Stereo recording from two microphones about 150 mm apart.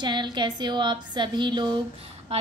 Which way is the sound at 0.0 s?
30° right (ahead or behind).